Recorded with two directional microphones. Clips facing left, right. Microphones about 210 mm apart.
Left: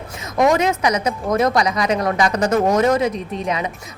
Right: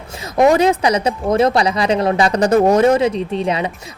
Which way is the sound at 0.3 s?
35° right (ahead or behind).